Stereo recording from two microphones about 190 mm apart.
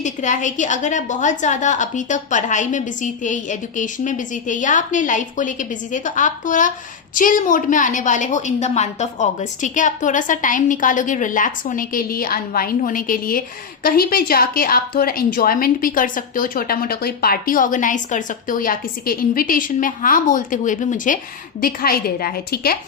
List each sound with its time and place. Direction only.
0.0 s a woman's voice: 40° left (ahead or behind)